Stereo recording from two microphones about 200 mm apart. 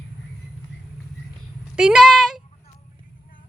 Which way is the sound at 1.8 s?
5° right (ahead or behind).